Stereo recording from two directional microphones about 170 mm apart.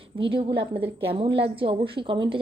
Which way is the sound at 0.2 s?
30° right (ahead or behind).